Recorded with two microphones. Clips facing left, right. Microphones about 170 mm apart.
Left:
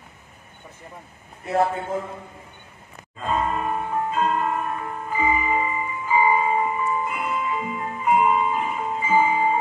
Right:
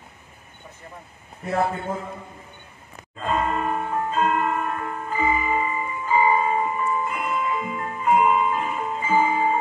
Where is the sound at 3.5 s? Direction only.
10° left (ahead or behind).